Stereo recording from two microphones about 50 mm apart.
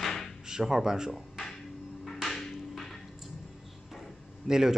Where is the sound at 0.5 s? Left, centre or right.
Centre.